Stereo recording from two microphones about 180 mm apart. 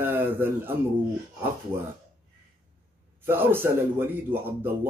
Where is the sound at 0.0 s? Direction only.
10° right (ahead or behind).